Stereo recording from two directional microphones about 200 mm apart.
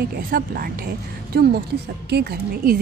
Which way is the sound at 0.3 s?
45° right (ahead or behind).